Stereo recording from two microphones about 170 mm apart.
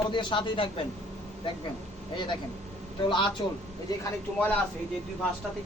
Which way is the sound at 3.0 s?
30° left (ahead or behind).